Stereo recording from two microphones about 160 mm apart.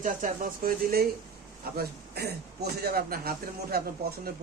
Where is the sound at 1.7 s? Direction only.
80° right.